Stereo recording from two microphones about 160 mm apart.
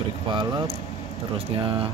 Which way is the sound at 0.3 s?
30° right (ahead or behind).